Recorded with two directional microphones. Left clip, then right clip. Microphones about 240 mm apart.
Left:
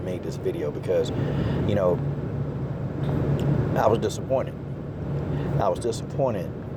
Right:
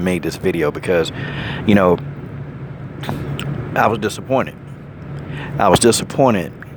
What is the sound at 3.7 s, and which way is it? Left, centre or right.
Speech, right.